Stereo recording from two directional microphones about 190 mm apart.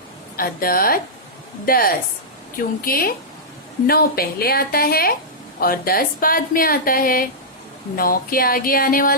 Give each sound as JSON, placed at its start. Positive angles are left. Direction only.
{"t": 0.3, "sound": "a woman's voice", "side_deg": 50}